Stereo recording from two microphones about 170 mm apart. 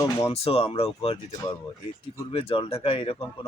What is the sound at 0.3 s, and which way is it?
Speech, 35° left (ahead or behind).